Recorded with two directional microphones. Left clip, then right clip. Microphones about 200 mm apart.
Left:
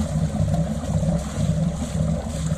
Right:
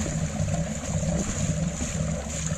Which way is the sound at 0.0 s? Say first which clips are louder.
Left 3 dB; centre (ahead or behind).